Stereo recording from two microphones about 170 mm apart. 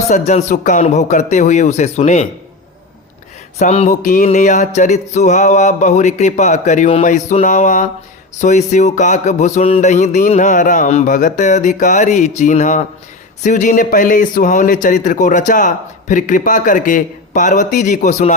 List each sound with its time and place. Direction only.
0.1 s a man's voice: 45° left (ahead or behind)
3.6 s a man's voice: 40° left (ahead or behind)